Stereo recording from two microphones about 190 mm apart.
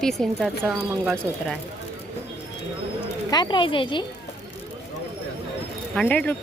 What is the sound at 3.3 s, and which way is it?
Speech, 25° left (ahead or behind).